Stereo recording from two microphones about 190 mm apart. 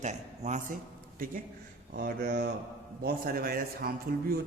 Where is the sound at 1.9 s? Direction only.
50° right (ahead or behind).